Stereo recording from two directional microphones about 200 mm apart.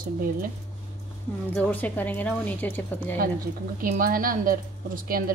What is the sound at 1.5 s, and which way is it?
A woman's voice, 5° left (ahead or behind).